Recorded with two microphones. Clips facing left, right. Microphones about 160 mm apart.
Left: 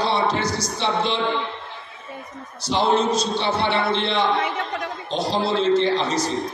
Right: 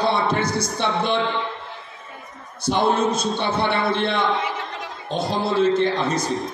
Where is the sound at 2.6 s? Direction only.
55° right (ahead or behind).